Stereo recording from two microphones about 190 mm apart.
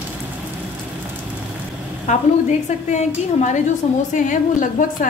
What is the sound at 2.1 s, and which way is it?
A woman's voice, 40° left (ahead or behind).